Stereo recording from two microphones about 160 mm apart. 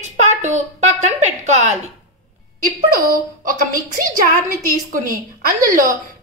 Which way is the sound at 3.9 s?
60° right (ahead or behind).